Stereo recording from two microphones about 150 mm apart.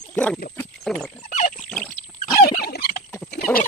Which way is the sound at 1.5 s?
10° left (ahead or behind).